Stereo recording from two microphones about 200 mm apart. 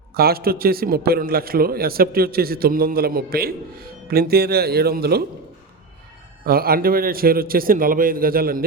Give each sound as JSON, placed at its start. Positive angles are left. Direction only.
{"t": 0.1, "sound": "a man's voice", "side_deg": -50}
{"t": 6.4, "sound": "a man's voice", "side_deg": -50}